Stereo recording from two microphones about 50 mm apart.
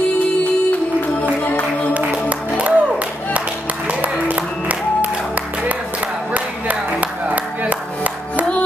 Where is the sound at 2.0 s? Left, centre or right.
Right.